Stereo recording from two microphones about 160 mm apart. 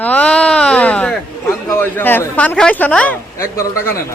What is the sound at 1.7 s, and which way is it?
A man's voice, 15° left (ahead or behind).